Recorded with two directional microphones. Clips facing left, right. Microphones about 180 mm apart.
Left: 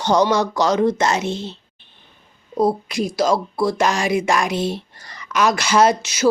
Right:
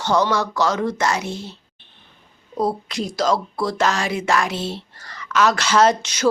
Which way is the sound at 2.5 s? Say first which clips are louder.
Left 4 dB; 10° left (ahead or behind).